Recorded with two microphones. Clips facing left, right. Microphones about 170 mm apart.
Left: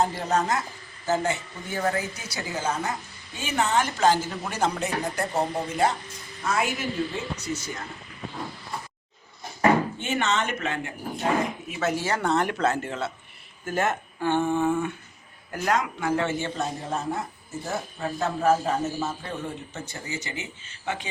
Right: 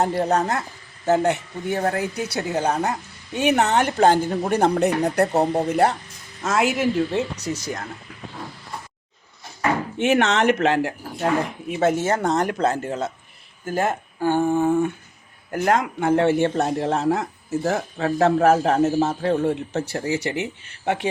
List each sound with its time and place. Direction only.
0.0 s a woman's voice: 65° right (ahead or behind)
6.4 s a woman's voice: 85° right
7.3 s speech: 40° right (ahead or behind)
10.0 s speech: 75° right (ahead or behind); by 14.8 s 40° right (ahead or behind)
15.5 s speech: 50° right (ahead or behind)